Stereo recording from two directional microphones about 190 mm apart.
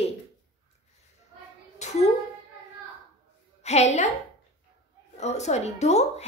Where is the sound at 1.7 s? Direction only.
35° left (ahead or behind).